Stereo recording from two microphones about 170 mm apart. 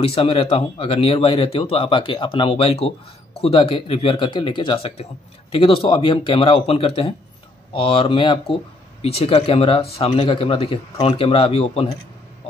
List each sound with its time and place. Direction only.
0.0 s speech: 35° left (ahead or behind)